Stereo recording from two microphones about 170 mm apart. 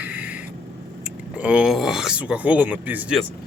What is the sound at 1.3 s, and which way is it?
Speech, 5° right (ahead or behind).